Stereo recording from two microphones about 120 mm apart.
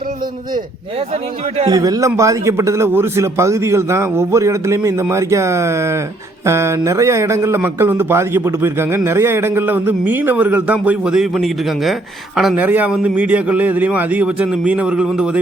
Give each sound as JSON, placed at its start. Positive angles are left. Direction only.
{"t": 1.6, "sound": "a man's voice", "side_deg": -30}
{"t": 12.5, "sound": "a man's voice", "side_deg": -15}